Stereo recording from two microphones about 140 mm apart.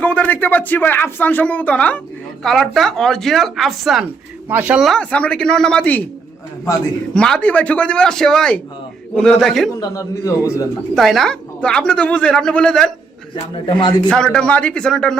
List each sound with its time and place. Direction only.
0.0 s speech: 10° left (ahead or behind)
4.4 s speech: 15° right (ahead or behind)
4.8 s speech: 5° left (ahead or behind)
7.1 s a man's voice: 5° left (ahead or behind)
9.8 s a man's voice: 25° left (ahead or behind)
10.9 s speech: centre (ahead or behind)
13.3 s speech: 35° left (ahead or behind)
14.1 s a man's voice: 5° left (ahead or behind)